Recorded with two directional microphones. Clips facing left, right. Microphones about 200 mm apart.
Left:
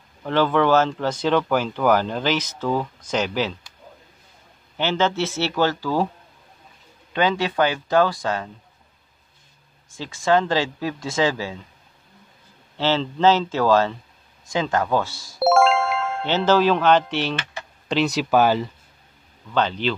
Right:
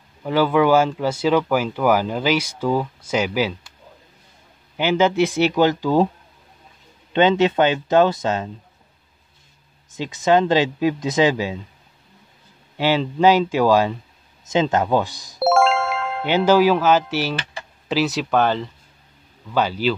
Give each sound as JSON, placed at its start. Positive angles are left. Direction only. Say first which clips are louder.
{"t": 0.2, "sound": "speech", "louder": "right 2 dB", "side_deg": -10}
{"t": 4.7, "sound": "speech", "louder": "right 4 dB", "side_deg": -10}
{"t": 7.1, "sound": "speech", "louder": "right 6 dB", "side_deg": -25}
{"t": 9.8, "sound": "speech", "louder": "right 3 dB", "side_deg": -20}
{"t": 12.7, "sound": "speech", "louder": "right 2 dB", "side_deg": -15}
{"t": 15.3, "sound": "music", "louder": "even", "side_deg": 0}
{"t": 16.3, "sound": "speech", "louder": "right 3 dB", "side_deg": -10}
{"t": 19.5, "sound": "speech", "louder": "right 2 dB", "side_deg": -5}